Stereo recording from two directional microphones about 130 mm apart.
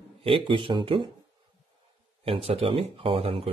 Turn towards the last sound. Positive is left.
turn(degrees=-45)  # may be behind; listen again after turning